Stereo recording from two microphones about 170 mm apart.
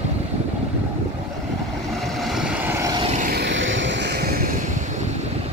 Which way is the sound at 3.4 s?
90° right.